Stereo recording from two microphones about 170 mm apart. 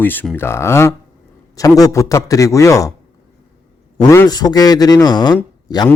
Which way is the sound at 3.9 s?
15° left (ahead or behind).